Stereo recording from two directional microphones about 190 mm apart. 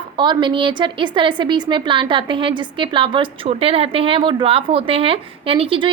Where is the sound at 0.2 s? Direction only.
25° right (ahead or behind).